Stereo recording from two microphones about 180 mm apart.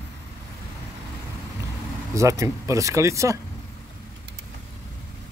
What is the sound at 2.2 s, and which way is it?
Speech, 15° right (ahead or behind).